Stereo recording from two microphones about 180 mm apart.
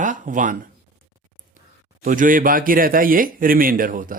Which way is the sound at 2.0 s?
50° right (ahead or behind).